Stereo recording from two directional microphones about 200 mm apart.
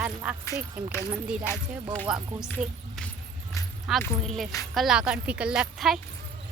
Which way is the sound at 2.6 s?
Centre (ahead or behind).